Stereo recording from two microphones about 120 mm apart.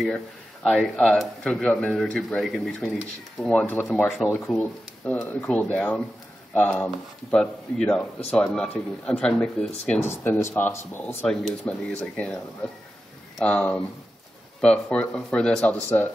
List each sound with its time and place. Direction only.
0.7 s a man's voice: centre (ahead or behind)
4.6 s speech: 10° left (ahead or behind)
10.0 s speech: 20° left (ahead or behind)
11.2 s a man's voice: 5° left (ahead or behind)